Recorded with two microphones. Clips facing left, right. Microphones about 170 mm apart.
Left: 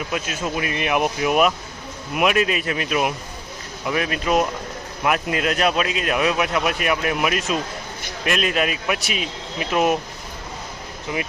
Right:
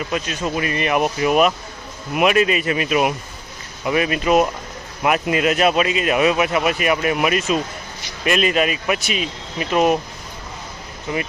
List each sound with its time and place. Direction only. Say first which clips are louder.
0.1 s speech: right 2 dB; 5° left (ahead or behind)
11.1 s speech: right 2 dB; 5° left (ahead or behind)